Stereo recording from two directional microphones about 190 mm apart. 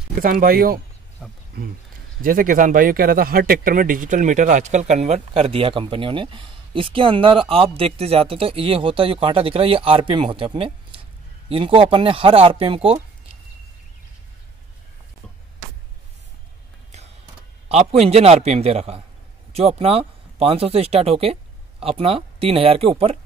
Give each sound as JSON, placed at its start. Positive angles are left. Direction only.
{"t": 0.2, "sound": "speech", "side_deg": -45}
{"t": 1.2, "sound": "speech", "side_deg": 0}
{"t": 2.2, "sound": "speech", "side_deg": -45}
{"t": 17.6, "sound": "a man's voice", "side_deg": -35}